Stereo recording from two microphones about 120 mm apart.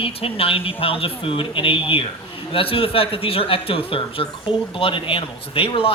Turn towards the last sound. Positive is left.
turn(degrees=50)  # may be behind; listen again after turning